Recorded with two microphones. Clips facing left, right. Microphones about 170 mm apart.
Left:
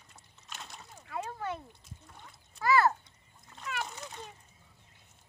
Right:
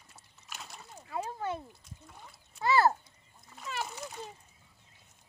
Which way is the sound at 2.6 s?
30° right (ahead or behind).